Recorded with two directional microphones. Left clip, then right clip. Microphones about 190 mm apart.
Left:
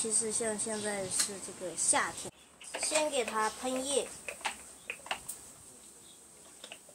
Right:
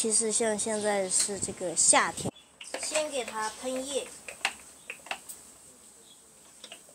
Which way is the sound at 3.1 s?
45° left (ahead or behind).